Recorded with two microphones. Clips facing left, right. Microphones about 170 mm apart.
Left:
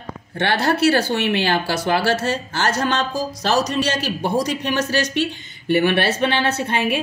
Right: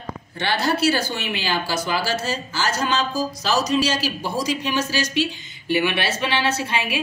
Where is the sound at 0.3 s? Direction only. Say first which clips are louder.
Left 3 dB; 60° left (ahead or behind).